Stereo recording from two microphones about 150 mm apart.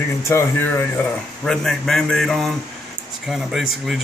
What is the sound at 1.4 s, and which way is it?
Speech, 5° left (ahead or behind).